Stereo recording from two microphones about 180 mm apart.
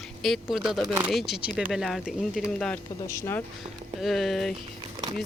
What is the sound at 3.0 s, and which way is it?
Speech, 15° left (ahead or behind).